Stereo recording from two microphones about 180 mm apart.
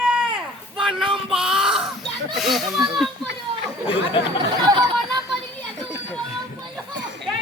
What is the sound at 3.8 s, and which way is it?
Chatter, 30° left (ahead or behind).